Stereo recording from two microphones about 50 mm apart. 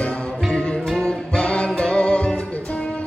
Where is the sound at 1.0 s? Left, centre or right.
Left.